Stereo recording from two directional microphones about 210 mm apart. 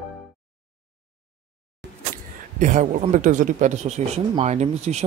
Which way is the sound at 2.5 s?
35° right (ahead or behind).